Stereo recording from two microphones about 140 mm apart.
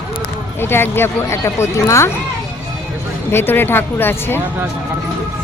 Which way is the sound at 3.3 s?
15° left (ahead or behind).